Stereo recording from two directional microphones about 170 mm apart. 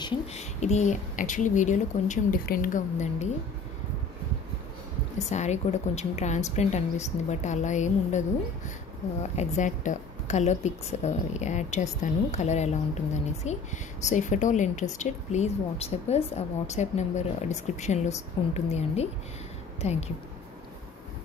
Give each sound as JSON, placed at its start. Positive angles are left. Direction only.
{"t": 0.3, "sound": "a woman's voice", "side_deg": 40}
{"t": 5.2, "sound": "a woman's voice", "side_deg": 40}
{"t": 9.3, "sound": "a woman's voice", "side_deg": 40}